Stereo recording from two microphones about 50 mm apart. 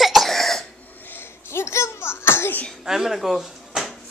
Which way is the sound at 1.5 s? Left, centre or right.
Left.